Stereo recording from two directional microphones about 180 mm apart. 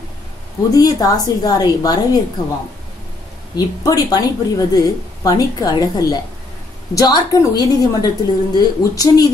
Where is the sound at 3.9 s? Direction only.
20° left (ahead or behind).